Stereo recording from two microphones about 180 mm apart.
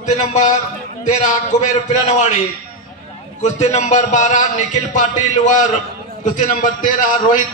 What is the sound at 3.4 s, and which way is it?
A man's voice, 40° left (ahead or behind).